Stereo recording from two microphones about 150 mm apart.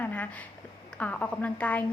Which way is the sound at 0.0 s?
10° left (ahead or behind).